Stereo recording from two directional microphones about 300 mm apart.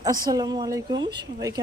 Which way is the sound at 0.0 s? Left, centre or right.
Centre.